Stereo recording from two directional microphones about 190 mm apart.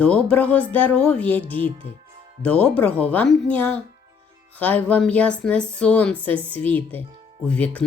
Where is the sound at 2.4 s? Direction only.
5° left (ahead or behind).